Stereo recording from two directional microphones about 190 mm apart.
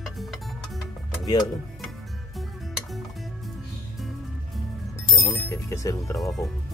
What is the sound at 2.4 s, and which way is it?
Music, centre (ahead or behind).